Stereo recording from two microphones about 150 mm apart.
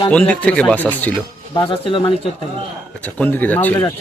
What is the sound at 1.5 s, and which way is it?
Speech, 35° left (ahead or behind).